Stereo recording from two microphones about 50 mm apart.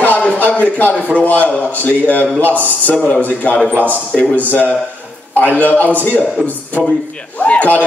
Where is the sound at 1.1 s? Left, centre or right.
Left.